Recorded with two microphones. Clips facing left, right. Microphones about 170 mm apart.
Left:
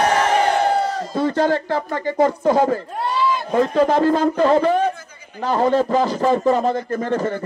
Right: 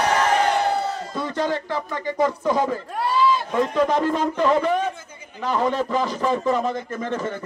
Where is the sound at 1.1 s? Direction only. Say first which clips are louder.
Left 7 dB; 35° left (ahead or behind).